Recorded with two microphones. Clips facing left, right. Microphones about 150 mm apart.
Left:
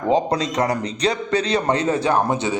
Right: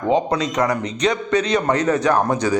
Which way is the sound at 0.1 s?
35° left (ahead or behind).